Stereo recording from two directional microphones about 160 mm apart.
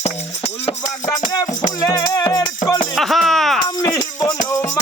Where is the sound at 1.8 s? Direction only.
25° left (ahead or behind).